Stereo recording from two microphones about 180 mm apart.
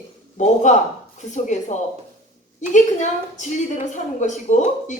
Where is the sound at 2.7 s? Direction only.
45° left (ahead or behind).